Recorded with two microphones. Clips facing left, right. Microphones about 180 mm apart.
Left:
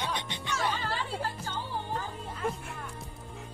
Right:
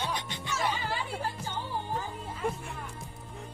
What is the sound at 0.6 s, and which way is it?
Music, 15° right (ahead or behind).